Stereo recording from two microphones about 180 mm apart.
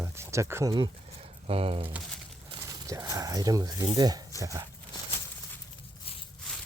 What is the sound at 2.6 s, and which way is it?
Speech, 20° right (ahead or behind).